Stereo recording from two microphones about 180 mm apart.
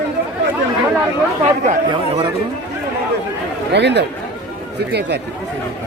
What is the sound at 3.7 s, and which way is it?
Speech, 70° right (ahead or behind).